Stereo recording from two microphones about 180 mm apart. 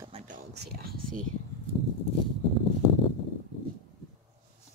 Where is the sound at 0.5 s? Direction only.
60° right (ahead or behind).